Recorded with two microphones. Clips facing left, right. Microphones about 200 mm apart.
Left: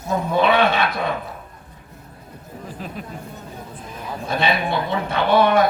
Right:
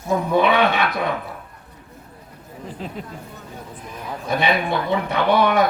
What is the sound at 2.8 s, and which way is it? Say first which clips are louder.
Speech: right 2 dB; 20° right (ahead or behind).